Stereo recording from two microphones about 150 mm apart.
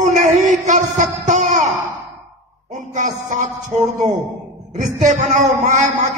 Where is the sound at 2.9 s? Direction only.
55° right (ahead or behind).